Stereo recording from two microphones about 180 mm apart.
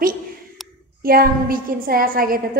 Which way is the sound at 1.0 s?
55° right (ahead or behind).